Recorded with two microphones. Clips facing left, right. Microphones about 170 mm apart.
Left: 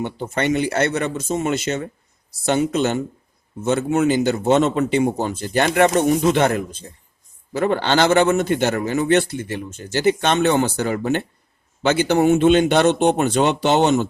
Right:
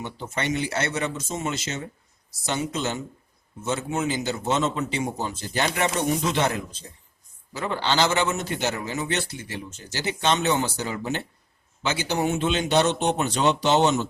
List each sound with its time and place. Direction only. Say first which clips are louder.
0.0 s a man's voice: left 7 dB; 55° left (ahead or behind)